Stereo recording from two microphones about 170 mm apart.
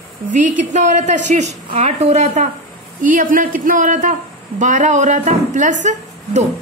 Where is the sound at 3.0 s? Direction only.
50° right (ahead or behind).